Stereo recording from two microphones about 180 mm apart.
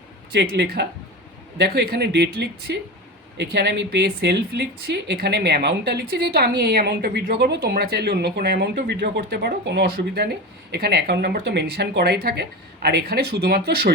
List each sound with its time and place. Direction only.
0.3 s speech: 75° right (ahead or behind)